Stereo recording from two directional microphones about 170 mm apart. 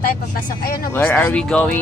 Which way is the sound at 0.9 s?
10° left (ahead or behind).